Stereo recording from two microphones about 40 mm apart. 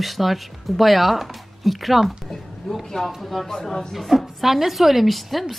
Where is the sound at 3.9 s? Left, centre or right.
Centre.